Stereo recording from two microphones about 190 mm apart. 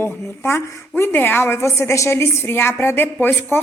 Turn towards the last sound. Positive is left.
turn(degrees=10)  # may be behind; listen again after turning